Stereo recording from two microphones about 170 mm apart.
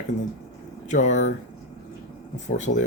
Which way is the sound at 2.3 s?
45° left (ahead or behind).